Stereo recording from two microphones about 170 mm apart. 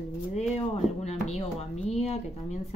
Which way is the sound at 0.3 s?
40° left (ahead or behind).